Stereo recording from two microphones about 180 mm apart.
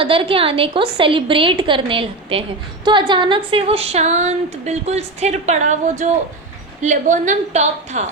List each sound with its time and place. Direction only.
0.0 s a woman's voice: 30° right (ahead or behind)